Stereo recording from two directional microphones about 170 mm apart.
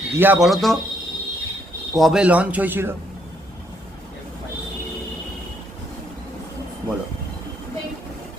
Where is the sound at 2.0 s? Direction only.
Centre (ahead or behind).